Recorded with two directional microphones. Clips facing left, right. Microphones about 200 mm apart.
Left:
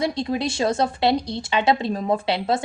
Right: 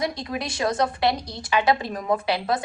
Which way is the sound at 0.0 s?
25° left (ahead or behind).